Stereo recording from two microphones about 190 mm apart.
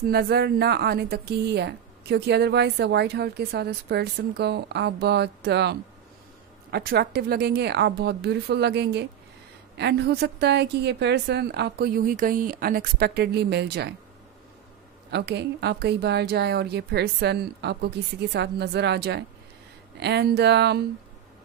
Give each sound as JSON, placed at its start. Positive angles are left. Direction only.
{"t": 0.0, "sound": "a woman's voice", "side_deg": -55}
{"t": 15.0, "sound": "a woman's voice", "side_deg": -65}